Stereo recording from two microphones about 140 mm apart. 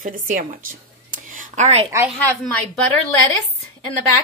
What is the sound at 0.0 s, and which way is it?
Speech, 75° right (ahead or behind).